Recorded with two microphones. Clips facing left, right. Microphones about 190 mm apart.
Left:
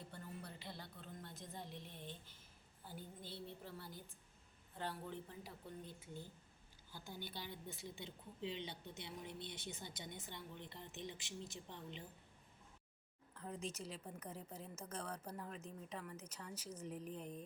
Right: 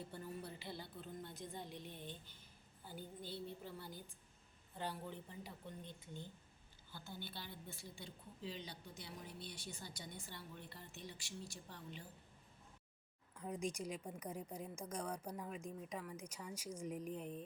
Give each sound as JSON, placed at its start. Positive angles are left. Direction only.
{"t": 0.1, "sound": "a sound", "side_deg": -5}
{"t": 4.7, "sound": "a woman's voice", "side_deg": 0}
{"t": 13.3, "sound": "a woman's voice", "side_deg": -15}